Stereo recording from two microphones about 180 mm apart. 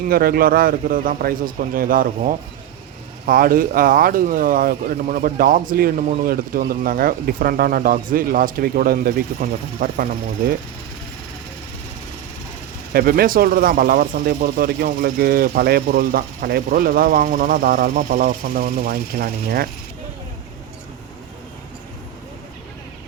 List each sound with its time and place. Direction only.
0.1 s speech: 55° right (ahead or behind)
12.9 s speech: 55° right (ahead or behind)